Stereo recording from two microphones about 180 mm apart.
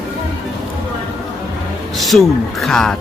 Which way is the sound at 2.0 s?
Centre (ahead or behind).